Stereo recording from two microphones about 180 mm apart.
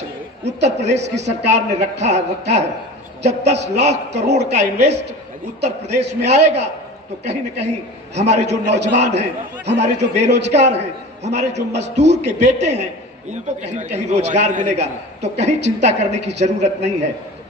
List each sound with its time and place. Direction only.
0.6 s a man's voice: 40° right (ahead or behind)
0.9 s a man's voice: 75° right (ahead or behind)
1.5 s a man's voice: 40° right (ahead or behind)
8.6 s a man's voice: 70° right (ahead or behind)
8.9 s a man's voice: 40° right (ahead or behind)